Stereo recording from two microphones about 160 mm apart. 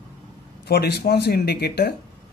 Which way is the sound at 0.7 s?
90° left.